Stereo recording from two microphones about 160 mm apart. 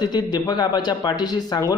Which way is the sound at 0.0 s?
25° left (ahead or behind).